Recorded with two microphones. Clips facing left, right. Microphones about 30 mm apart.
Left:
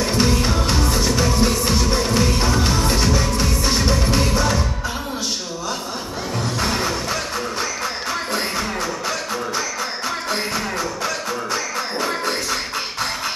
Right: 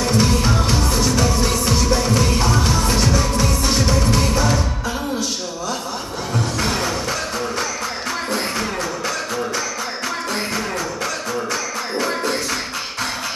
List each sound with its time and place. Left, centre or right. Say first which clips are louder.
0.0 s music: right 1 dB; centre; by 3.7 s left
3.8 s music: right 1 dB; centre
6.6 s music: left 1 dB; centre